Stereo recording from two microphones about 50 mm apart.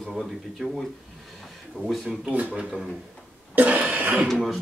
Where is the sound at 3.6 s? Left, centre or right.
Right.